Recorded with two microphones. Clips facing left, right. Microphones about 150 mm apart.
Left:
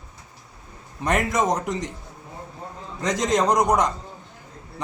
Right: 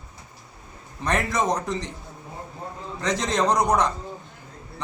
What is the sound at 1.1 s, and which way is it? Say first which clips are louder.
Speech: left 2 dB; 20° left (ahead or behind).